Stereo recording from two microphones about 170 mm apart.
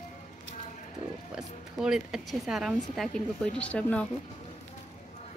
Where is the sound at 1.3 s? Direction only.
5° right (ahead or behind).